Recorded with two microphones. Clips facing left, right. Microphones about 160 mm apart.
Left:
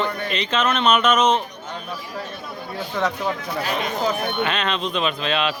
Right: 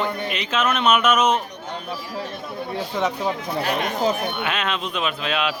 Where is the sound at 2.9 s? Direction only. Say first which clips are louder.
Left 1 dB; 20° right (ahead or behind).